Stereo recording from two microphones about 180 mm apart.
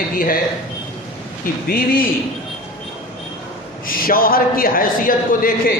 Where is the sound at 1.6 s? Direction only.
50° left (ahead or behind).